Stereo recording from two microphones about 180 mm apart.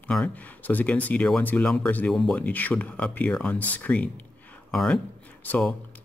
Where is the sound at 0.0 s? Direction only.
5° left (ahead or behind).